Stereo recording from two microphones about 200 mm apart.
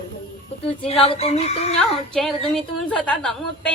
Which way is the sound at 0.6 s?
30° left (ahead or behind).